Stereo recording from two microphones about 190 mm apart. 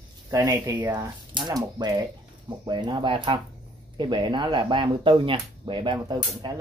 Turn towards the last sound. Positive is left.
turn(degrees=-25)  # may be behind; listen again after turning